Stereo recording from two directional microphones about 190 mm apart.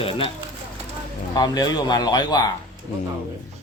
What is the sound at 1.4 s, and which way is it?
Speech, 20° left (ahead or behind).